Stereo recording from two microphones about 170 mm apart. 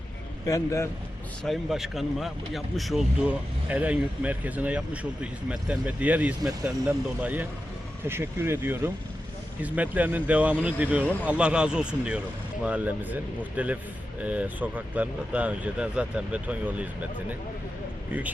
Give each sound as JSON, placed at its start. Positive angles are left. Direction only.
{"t": 0.4, "sound": "speech", "side_deg": 20}
{"t": 1.5, "sound": "speech", "side_deg": 0}